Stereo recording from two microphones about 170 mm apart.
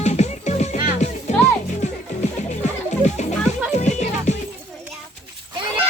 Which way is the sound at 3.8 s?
45° left (ahead or behind).